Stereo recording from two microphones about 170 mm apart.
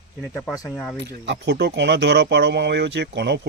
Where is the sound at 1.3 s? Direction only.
80° right.